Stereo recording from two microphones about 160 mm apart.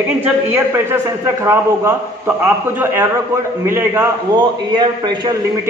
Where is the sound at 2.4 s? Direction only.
15° right (ahead or behind).